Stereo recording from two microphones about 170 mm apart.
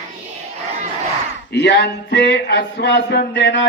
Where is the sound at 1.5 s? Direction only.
85° left.